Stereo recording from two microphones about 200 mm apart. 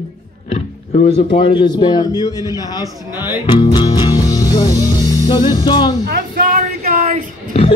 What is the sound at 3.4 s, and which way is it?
Music, 20° left (ahead or behind).